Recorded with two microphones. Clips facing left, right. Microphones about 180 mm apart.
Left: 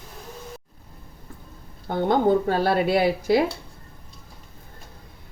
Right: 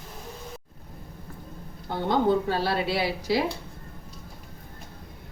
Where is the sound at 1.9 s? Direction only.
50° left (ahead or behind).